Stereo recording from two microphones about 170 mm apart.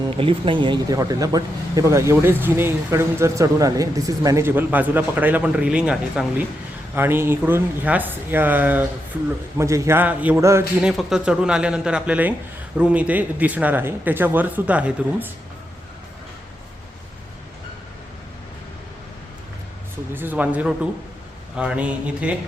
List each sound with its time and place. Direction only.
0.1 s speech: 30° right (ahead or behind); by 10.6 s 15° right (ahead or behind)
10.8 s speech: 5° right (ahead or behind)
20.1 s speech: 10° right (ahead or behind)